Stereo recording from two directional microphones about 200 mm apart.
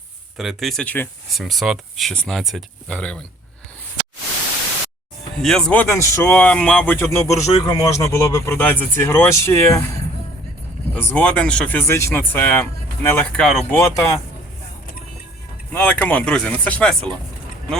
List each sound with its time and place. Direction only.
0.3 s speech: centre (ahead or behind)
5.4 s speech: 5° left (ahead or behind)
10.9 s speech: 5° left (ahead or behind)
13.7 s speech: 15° left (ahead or behind)
15.7 s speech: 10° left (ahead or behind)